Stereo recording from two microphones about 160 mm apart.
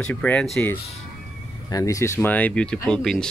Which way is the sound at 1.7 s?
20° left (ahead or behind).